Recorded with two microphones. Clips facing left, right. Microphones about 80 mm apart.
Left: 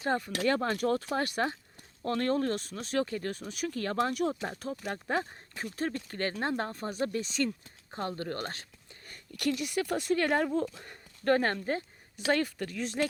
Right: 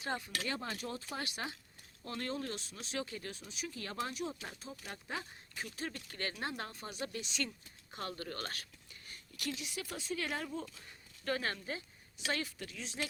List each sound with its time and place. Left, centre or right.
0.0 s speech: left
0.3 s speech: left
9.0 s speech: left